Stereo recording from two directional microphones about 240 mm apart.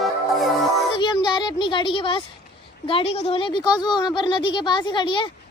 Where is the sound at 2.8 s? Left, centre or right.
Left.